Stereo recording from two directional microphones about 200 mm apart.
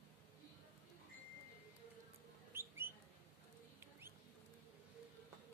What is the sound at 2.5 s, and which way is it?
Bird, 10° right (ahead or behind).